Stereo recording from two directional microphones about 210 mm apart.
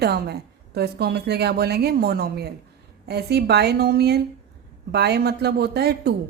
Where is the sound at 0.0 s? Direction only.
50° right (ahead or behind).